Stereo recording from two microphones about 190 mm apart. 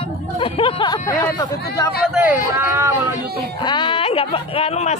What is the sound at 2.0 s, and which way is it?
Speech, 5° right (ahead or behind).